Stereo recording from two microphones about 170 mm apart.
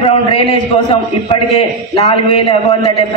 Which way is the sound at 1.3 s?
35° left (ahead or behind).